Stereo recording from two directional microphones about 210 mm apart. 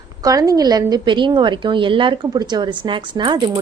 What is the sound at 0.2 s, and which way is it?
A woman's voice, 15° right (ahead or behind).